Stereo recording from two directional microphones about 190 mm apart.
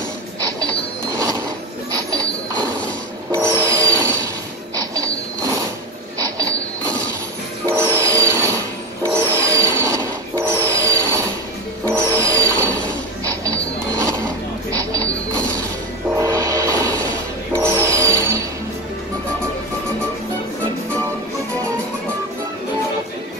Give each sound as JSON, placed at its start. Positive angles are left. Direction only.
{"t": 3.3, "sound": "music", "side_deg": -15}
{"t": 4.7, "sound": "mechanisms", "side_deg": -20}
{"t": 7.6, "sound": "music", "side_deg": -15}
{"t": 14.7, "sound": "a sound", "side_deg": -15}
{"t": 16.2, "sound": "music", "side_deg": -15}